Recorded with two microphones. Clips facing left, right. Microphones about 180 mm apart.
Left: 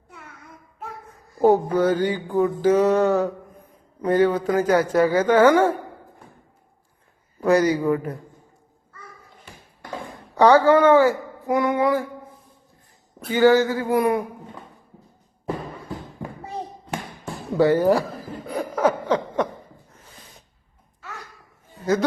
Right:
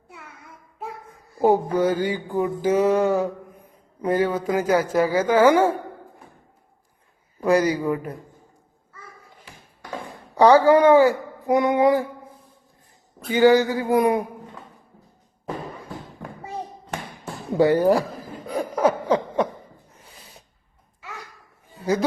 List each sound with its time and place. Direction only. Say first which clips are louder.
1.4 s mantra: left 1 dB; 10° right (ahead or behind)
7.6 s mantra: left 2 dB; 10° right (ahead or behind)
10.3 s speech: right 1 dB; 10° right (ahead or behind)
13.2 s mantra: even; 15° right (ahead or behind)
16.2 s a sound: left 3 dB; 10° left (ahead or behind)
17.5 s mantra: even; 15° right (ahead or behind)
18.5 s a sound: right 1 dB; 10° right (ahead or behind)